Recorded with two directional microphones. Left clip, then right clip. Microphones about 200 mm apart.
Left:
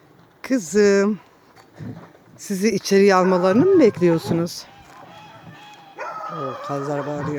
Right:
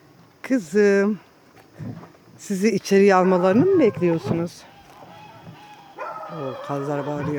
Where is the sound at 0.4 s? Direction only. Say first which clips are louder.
Left 1 dB; 10° left (ahead or behind).